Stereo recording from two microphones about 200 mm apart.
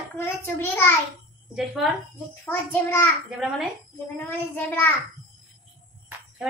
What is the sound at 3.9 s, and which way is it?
Speech, 10° left (ahead or behind).